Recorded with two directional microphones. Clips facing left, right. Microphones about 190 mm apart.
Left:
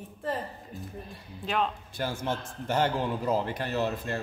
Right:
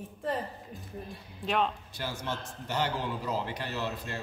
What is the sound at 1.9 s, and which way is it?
A man's voice, 50° left (ahead or behind).